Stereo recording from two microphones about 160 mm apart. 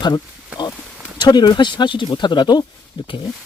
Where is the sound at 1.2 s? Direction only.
25° left (ahead or behind).